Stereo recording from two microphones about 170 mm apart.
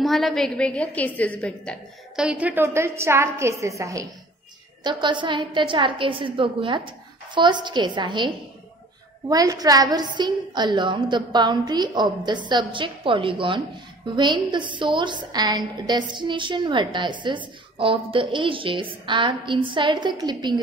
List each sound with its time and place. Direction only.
0.0 s a woman's voice: centre (ahead or behind)
2.2 s a woman's voice: 10° right (ahead or behind); by 8.3 s 30° right (ahead or behind)
9.3 s a woman's voice: 20° right (ahead or behind)